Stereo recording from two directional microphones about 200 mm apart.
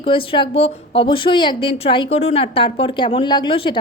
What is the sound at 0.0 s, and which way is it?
A woman's voice, 25° left (ahead or behind).